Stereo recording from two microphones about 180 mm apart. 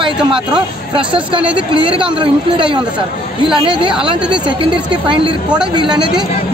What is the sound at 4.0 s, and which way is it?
Speech, 30° right (ahead or behind).